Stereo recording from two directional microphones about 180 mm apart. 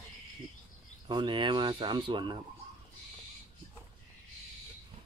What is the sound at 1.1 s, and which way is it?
Speech, 25° right (ahead or behind).